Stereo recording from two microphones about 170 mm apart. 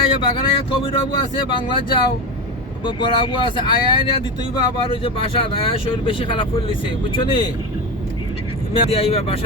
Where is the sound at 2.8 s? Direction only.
30° left (ahead or behind).